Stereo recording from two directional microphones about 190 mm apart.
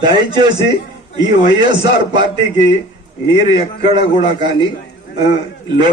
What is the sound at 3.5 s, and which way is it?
Speech, 25° right (ahead or behind).